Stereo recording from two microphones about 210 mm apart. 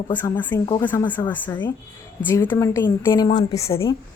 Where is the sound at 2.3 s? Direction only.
10° left (ahead or behind).